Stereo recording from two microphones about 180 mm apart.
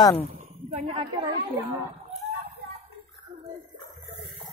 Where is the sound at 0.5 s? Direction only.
35° right (ahead or behind).